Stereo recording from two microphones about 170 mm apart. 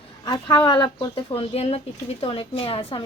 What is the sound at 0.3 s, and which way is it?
A woman's voice, 25° left (ahead or behind).